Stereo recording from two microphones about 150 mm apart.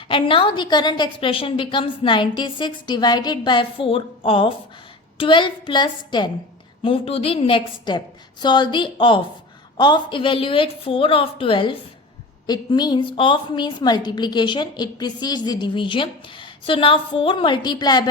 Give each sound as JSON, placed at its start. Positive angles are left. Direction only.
{"t": 0.1, "sound": "a woman's voice", "side_deg": 35}